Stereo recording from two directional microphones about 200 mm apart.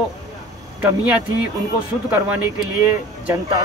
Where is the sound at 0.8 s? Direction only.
5° right (ahead or behind).